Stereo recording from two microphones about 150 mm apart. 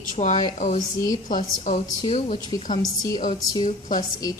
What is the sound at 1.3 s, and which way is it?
A woman's voice, 55° left (ahead or behind).